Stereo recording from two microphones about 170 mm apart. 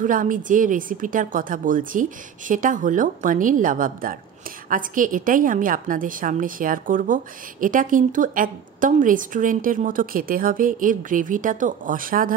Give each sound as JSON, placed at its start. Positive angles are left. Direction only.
{"t": 0.0, "sound": "speech", "side_deg": -50}